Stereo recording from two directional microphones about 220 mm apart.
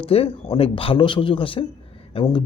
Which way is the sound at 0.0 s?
25° left (ahead or behind).